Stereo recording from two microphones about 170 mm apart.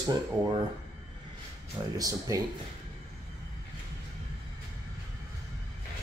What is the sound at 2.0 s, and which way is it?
Speech, 20° right (ahead or behind).